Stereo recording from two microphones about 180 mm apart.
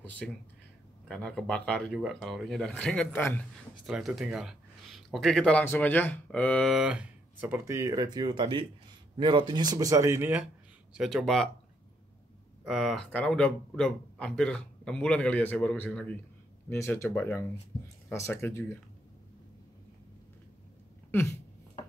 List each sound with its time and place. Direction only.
0.2 s a man's voice: centre (ahead or behind)
12.6 s speech: centre (ahead or behind); by 18.8 s 15° left (ahead or behind)